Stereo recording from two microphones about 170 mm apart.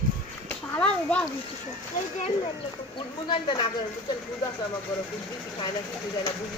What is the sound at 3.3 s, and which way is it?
Speech, 30° left (ahead or behind).